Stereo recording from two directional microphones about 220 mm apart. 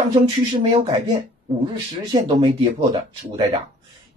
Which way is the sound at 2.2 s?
25° right (ahead or behind).